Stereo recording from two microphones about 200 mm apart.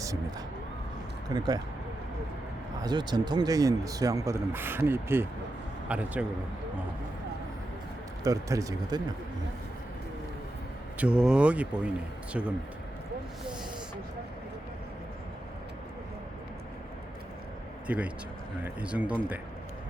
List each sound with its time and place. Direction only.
1.3 s speech: 20° right (ahead or behind)
2.8 s speech: 20° right (ahead or behind); by 6.2 s 5° right (ahead or behind)
8.2 s speech: 15° right (ahead or behind)
10.9 s speech: 5° right (ahead or behind)
17.8 s speech: 5° right (ahead or behind)